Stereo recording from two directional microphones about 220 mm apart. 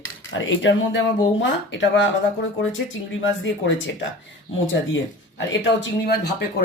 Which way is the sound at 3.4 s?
55° left (ahead or behind).